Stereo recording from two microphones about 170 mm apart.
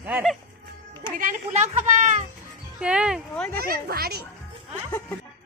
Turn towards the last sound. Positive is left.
turn(degrees=10)  # may be behind; listen again after turning